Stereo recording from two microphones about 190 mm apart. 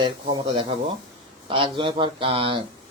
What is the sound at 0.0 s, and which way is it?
A man's voice, 25° right (ahead or behind).